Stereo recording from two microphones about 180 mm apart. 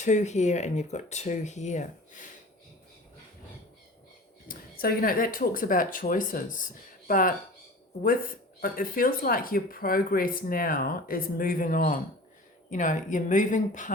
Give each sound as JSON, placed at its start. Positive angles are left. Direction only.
{"t": 0.0, "sound": "speech", "side_deg": 40}
{"t": 4.4, "sound": "speech", "side_deg": 55}
{"t": 8.6, "sound": "speech", "side_deg": 50}